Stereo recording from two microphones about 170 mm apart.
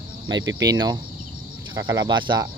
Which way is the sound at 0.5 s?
20° right (ahead or behind).